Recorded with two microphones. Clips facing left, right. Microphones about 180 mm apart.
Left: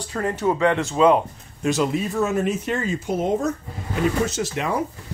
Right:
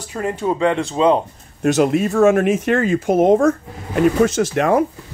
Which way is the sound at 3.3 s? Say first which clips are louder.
Right 8 dB; 90° right.